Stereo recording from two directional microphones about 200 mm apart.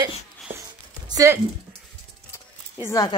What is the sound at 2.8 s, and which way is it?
Speech, 15° left (ahead or behind).